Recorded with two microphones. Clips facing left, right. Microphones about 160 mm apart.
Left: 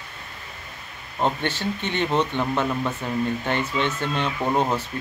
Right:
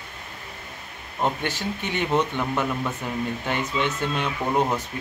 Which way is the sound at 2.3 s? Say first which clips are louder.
Left 2 dB; 20° left (ahead or behind).